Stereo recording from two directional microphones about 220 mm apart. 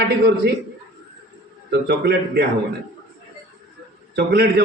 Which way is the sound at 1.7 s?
50° right (ahead or behind).